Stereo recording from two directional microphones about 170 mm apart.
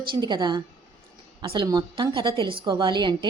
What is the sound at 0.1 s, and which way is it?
A woman's voice, 25° right (ahead or behind).